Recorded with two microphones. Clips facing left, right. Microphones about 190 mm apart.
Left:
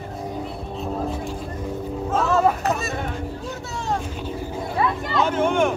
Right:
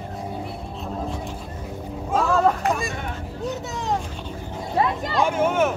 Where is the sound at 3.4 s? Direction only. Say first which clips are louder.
Right 4 dB; 15° right (ahead or behind).